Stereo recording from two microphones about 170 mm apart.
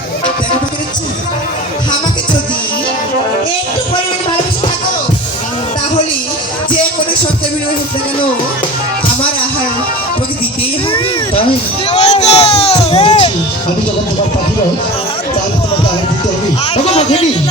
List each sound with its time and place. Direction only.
11.9 s music: 40° left (ahead or behind)
16.7 s speech: 40° left (ahead or behind)